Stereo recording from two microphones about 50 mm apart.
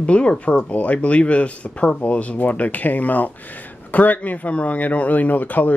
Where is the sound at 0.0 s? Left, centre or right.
Left.